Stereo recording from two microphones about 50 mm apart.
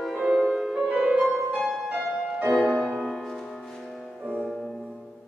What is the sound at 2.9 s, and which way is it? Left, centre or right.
Music, left.